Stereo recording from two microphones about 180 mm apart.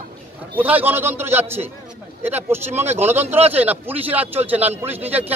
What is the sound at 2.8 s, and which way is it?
Speech, 35° right (ahead or behind).